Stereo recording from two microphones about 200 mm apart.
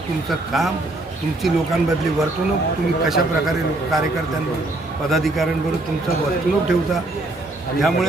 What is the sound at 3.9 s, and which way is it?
Speech, centre (ahead or behind).